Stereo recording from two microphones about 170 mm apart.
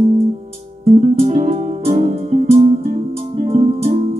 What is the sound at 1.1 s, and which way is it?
Music, 35° right (ahead or behind).